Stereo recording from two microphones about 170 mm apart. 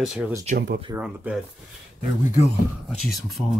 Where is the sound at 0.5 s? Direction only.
65° right (ahead or behind).